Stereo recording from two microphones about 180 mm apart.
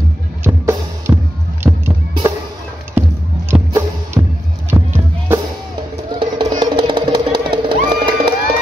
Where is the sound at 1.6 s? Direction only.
15° right (ahead or behind).